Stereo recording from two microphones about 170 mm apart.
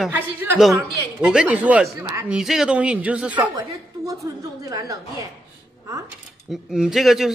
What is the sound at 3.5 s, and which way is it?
A woman's voice, 20° right (ahead or behind).